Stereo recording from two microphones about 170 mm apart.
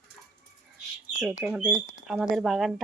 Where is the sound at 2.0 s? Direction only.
Centre (ahead or behind).